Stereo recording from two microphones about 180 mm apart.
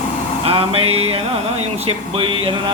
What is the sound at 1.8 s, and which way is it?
Speech, 30° right (ahead or behind).